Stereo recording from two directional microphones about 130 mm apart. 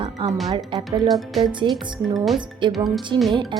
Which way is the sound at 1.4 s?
40° right (ahead or behind).